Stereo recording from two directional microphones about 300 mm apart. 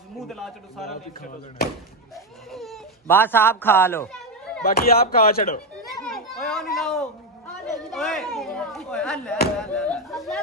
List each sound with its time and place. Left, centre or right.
0.3 s speech: centre
0.8 s speech: left
2.1 s speech: centre
4.6 s speech: left
5.9 s a sound: centre
7.7 s speech: centre